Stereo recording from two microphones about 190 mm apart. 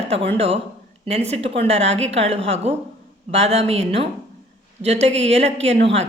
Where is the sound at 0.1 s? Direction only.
30° right (ahead or behind).